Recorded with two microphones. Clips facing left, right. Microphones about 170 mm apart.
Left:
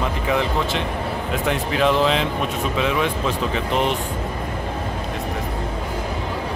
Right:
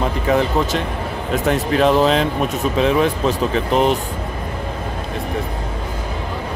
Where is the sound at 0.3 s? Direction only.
40° right (ahead or behind).